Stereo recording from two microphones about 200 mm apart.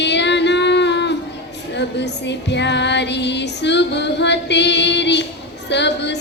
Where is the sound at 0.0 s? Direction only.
60° left (ahead or behind).